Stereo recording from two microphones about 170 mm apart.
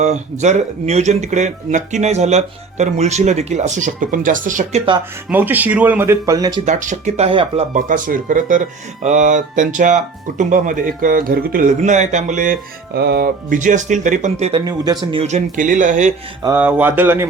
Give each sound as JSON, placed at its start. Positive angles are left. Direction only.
{"t": 0.0, "sound": "speech", "side_deg": -45}
{"t": 5.3, "sound": "speech", "side_deg": -10}
{"t": 6.7, "sound": "speech", "side_deg": -45}
{"t": 7.7, "sound": "speech", "side_deg": -50}
{"t": 11.8, "sound": "speech", "side_deg": -45}
{"t": 14.6, "sound": "speech", "side_deg": -25}
{"t": 15.2, "sound": "speech", "side_deg": -45}
{"t": 16.4, "sound": "speech", "side_deg": -15}